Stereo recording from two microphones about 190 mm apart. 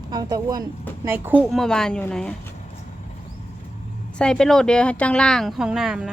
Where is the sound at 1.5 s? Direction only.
5° left (ahead or behind).